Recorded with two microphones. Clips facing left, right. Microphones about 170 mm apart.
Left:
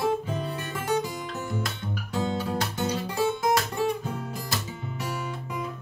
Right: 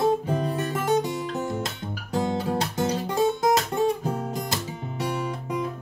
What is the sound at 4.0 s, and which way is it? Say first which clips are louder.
Guitar: right 5 dB; 35° right (ahead or behind).